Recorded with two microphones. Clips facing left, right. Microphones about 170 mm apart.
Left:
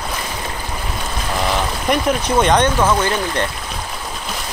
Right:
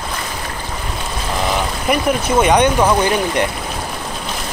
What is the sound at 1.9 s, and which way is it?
Speech, 5° right (ahead or behind).